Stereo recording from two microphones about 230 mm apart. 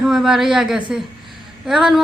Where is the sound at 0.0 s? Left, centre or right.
Centre.